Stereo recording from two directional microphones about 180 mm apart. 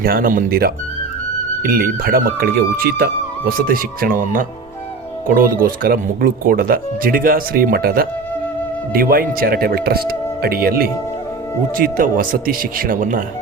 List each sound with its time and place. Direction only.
0.0 s speech: 55° right (ahead or behind)